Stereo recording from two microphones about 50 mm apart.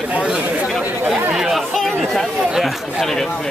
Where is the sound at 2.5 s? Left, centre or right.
Centre.